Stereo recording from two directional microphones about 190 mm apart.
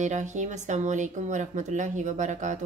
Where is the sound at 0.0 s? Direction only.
40° right (ahead or behind).